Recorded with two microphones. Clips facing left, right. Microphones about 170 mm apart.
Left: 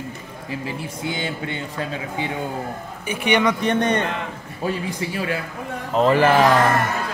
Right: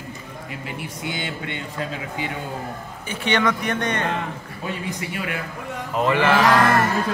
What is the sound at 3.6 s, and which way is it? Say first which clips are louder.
Speech: left 4 dB; 30° left (ahead or behind).